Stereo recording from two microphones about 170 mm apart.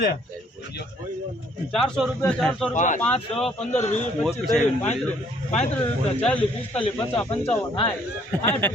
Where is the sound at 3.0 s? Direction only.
5° left (ahead or behind).